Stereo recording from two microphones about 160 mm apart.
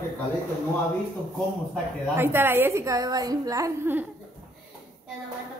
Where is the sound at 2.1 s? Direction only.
15° right (ahead or behind).